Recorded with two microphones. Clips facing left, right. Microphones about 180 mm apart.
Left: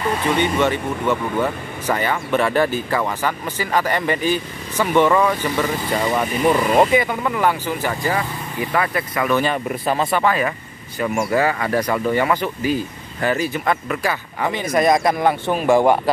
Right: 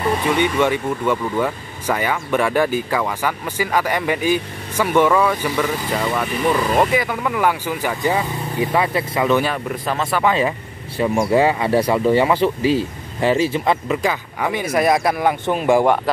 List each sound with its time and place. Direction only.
0.4 s speech: 10° right (ahead or behind)
9.8 s speech: 5° left (ahead or behind)
10.2 s speech: 25° right (ahead or behind)
14.4 s speech: 10° right (ahead or behind)
15.4 s speech: 20° right (ahead or behind)